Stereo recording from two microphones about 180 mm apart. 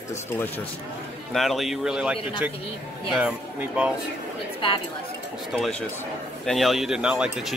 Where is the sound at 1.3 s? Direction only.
Centre (ahead or behind).